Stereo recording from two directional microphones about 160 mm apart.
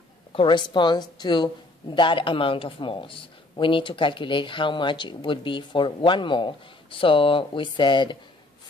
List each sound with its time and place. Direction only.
0.3 s a woman's voice: 30° left (ahead or behind)